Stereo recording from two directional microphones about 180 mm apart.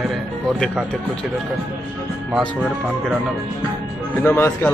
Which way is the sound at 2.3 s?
Centre (ahead or behind).